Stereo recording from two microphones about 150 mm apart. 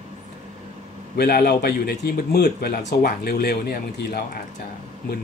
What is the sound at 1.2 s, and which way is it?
Speech, 90° left.